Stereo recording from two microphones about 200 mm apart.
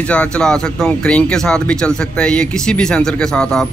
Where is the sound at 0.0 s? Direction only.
5° left (ahead or behind).